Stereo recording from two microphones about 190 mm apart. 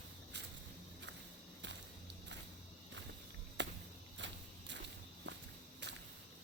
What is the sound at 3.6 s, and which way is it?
Chop, 65° right (ahead or behind).